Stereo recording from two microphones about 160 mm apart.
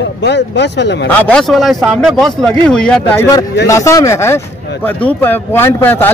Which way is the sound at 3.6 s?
20° left (ahead or behind).